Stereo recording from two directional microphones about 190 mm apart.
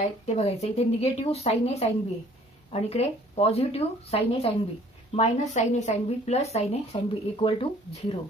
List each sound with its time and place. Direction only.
0.4 s speech: 35° left (ahead or behind)